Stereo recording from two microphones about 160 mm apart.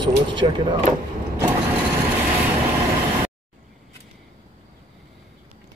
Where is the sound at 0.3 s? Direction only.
30° right (ahead or behind).